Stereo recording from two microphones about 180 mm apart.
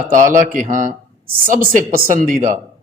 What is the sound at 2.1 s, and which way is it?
Speech, 50° right (ahead or behind).